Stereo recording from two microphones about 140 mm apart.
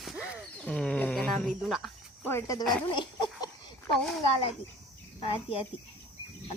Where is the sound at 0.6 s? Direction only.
5° left (ahead or behind).